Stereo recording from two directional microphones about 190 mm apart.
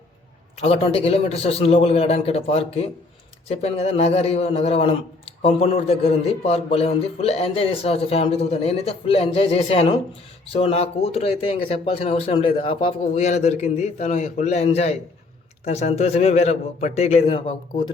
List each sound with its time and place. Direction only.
0.6 s a man's voice: 30° left (ahead or behind)